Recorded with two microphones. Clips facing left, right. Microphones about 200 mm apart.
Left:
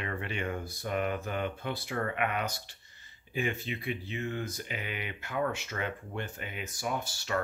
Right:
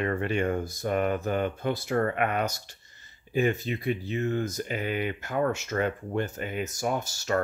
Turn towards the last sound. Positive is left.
turn(degrees=-45)  # may be behind; listen again after turning